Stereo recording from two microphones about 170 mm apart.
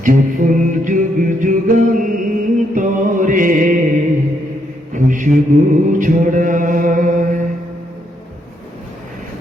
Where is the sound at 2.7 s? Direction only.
50° right (ahead or behind).